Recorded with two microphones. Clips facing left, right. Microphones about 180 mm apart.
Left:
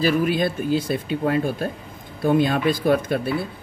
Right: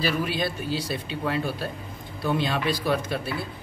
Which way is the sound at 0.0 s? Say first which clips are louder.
Left 6 dB; 50° left (ahead or behind).